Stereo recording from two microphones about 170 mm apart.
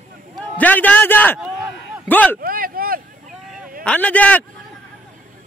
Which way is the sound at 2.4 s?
55° right (ahead or behind).